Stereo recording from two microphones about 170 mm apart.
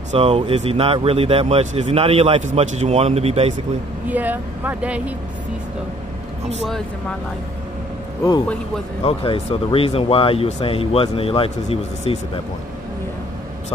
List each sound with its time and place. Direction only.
0.1 s speech: 35° right (ahead or behind)
4.1 s speech: 10° right (ahead or behind)
9.0 s speech: 35° left (ahead or behind)